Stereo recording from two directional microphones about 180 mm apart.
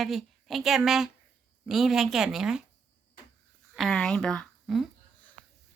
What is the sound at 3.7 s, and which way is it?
Speech, centre (ahead or behind).